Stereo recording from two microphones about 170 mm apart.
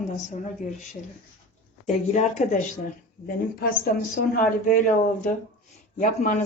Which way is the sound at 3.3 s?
65° left (ahead or behind).